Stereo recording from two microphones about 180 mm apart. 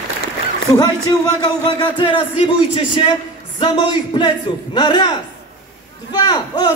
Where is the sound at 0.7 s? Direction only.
20° left (ahead or behind).